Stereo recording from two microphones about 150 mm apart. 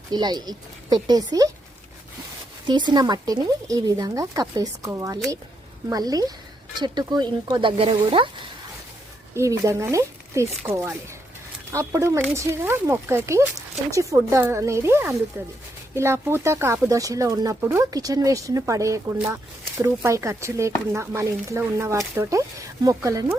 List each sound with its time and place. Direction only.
0.1 s speech: 30° right (ahead or behind)
2.6 s speech: 30° right (ahead or behind)
9.3 s speech: 20° right (ahead or behind)